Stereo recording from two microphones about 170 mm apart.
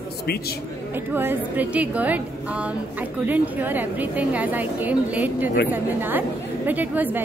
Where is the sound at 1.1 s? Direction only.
10° right (ahead or behind).